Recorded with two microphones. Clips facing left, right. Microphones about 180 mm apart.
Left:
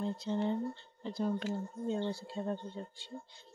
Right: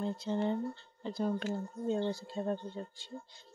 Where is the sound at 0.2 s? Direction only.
50° right (ahead or behind).